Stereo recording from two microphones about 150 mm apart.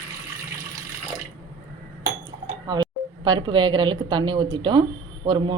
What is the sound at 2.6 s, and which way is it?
A woman's voice, 25° right (ahead or behind).